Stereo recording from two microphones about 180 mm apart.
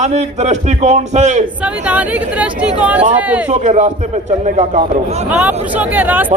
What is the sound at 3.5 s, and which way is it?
A man's voice, 40° right (ahead or behind).